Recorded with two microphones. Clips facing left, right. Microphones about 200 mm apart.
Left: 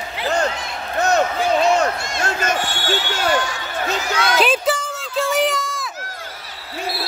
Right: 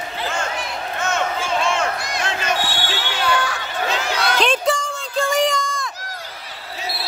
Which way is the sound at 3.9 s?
50° left (ahead or behind).